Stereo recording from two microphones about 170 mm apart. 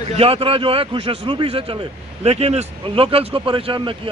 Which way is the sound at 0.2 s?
30° right (ahead or behind).